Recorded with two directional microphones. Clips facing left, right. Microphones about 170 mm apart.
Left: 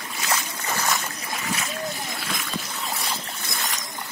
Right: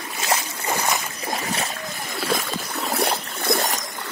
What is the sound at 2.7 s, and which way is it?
Boat, 65° right (ahead or behind).